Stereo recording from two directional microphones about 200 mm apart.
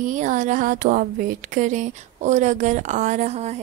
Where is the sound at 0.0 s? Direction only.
40° right (ahead or behind).